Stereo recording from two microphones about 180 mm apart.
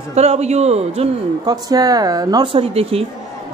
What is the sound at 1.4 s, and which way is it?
Speech, 20° right (ahead or behind).